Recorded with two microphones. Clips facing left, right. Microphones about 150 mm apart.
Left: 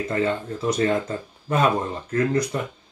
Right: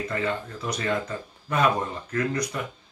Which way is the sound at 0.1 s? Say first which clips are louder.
Left 5 dB; 30° left (ahead or behind).